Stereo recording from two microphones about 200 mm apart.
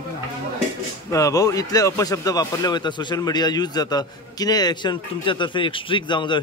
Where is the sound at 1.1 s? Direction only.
15° left (ahead or behind).